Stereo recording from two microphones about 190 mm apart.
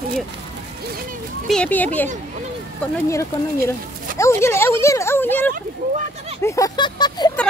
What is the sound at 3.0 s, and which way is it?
Speech, 15° left (ahead or behind).